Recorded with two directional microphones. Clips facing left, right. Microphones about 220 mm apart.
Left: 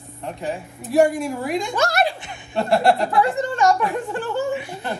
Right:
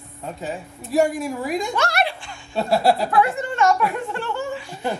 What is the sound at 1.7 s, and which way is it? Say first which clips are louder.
Speech: left 2 dB; 45° left (ahead or behind).